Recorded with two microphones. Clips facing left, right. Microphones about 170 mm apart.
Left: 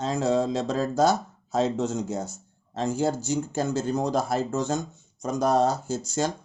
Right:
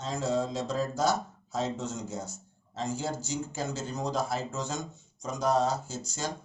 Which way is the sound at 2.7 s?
55° left (ahead or behind).